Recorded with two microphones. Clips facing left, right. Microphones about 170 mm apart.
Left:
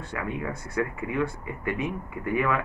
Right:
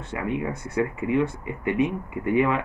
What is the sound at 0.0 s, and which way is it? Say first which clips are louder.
Speech: right 4 dB; 20° right (ahead or behind).